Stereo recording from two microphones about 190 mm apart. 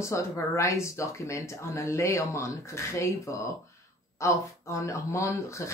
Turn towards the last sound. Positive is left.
turn(degrees=15)  # may be behind; listen again after turning